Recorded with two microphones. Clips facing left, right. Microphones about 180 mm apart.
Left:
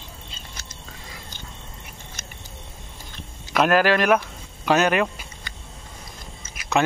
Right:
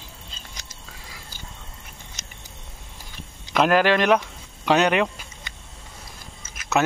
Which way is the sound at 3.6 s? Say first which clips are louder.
Even; 20° right (ahead or behind).